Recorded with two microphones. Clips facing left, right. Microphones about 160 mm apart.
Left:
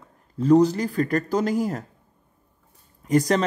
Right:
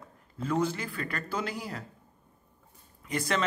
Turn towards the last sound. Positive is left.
turn(degrees=40)  # may be behind; listen again after turning